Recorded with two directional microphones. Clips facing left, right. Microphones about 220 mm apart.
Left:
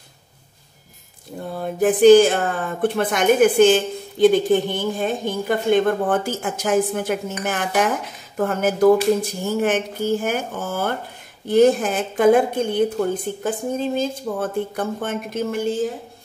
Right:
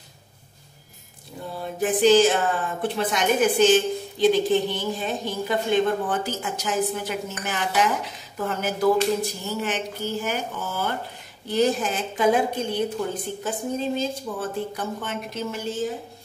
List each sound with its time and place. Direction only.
1.5 s speech: 55° left (ahead or behind)